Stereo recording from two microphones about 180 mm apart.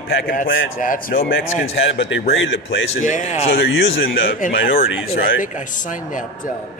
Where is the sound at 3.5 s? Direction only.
75° left (ahead or behind); by 4.0 s 90° left.